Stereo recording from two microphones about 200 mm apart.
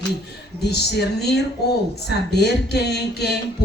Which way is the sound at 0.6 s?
55° left (ahead or behind).